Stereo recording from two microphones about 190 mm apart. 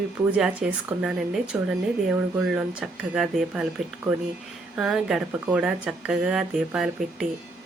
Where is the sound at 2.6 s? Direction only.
5° right (ahead or behind).